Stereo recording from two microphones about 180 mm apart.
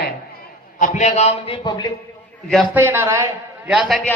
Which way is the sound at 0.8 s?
40° left (ahead or behind).